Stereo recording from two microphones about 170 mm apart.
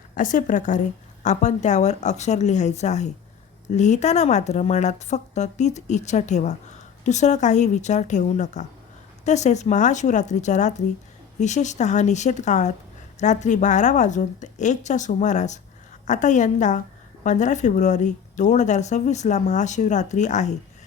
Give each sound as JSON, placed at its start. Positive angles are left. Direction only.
{"t": 0.1, "sound": "speech", "side_deg": 50}